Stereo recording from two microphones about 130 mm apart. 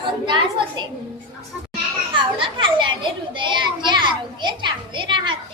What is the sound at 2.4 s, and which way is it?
A child's voice, 40° right (ahead or behind).